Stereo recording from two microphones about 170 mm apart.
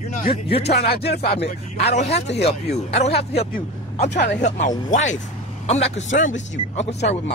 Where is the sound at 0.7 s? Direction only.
70° left (ahead or behind).